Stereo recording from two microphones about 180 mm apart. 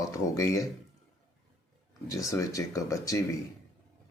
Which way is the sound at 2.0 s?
20° left (ahead or behind).